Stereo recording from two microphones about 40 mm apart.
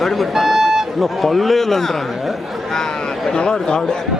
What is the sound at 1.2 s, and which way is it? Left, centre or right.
Speech, centre.